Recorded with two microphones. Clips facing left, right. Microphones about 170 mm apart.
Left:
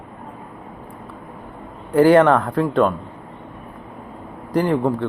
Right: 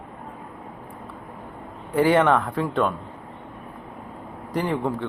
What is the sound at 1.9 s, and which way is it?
Speech, centre (ahead or behind).